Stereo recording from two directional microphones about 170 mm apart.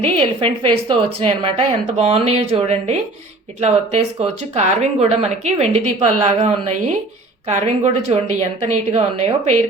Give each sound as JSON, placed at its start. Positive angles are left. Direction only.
{"t": 0.0, "sound": "speech", "side_deg": -30}